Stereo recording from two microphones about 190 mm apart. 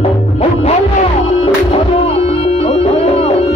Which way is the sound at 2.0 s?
35° left (ahead or behind).